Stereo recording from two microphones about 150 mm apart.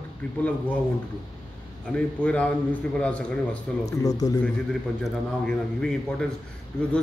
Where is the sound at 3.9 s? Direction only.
25° left (ahead or behind).